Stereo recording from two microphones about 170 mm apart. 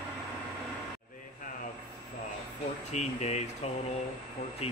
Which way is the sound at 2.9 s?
40° left (ahead or behind).